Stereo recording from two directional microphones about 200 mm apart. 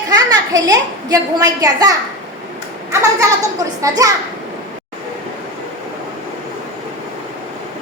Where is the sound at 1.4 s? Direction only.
15° right (ahead or behind).